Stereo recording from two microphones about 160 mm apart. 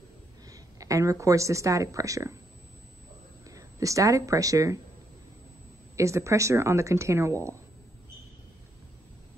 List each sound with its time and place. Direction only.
0.5 s speech: 20° right (ahead or behind)
3.4 s speech: 20° right (ahead or behind)
5.9 s speech: 20° right (ahead or behind)